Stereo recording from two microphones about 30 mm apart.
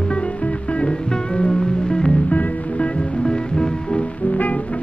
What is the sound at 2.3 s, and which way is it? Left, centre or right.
Music, left.